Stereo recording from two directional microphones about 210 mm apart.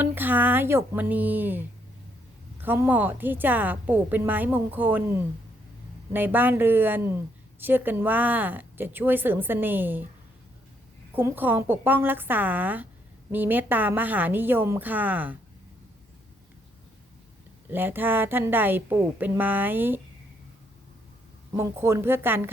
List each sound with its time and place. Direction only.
0.0 s a woman's voice: 10° right (ahead or behind)
6.1 s a woman's voice: 10° right (ahead or behind)
11.1 s a woman's voice: 10° right (ahead or behind)
17.7 s a woman's voice: 10° right (ahead or behind)
21.5 s a woman's voice: 10° right (ahead or behind)